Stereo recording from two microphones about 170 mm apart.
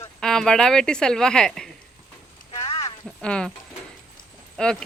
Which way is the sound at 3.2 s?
5° left (ahead or behind).